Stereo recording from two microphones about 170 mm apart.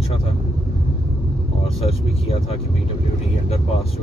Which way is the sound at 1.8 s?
35° left (ahead or behind).